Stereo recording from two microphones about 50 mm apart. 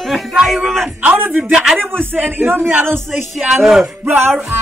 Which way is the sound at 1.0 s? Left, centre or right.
Right.